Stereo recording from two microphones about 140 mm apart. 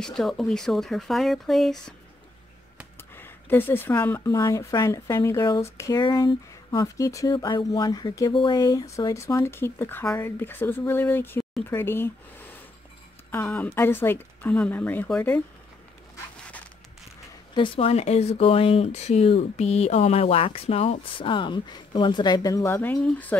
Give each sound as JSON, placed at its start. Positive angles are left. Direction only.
{"t": 0.0, "sound": "speech", "side_deg": 0}
{"t": 3.0, "sound": "speech", "side_deg": 15}
{"t": 7.3, "sound": "a sound", "side_deg": 35}
{"t": 8.4, "sound": "speech", "side_deg": 30}
{"t": 17.6, "sound": "speech", "side_deg": 45}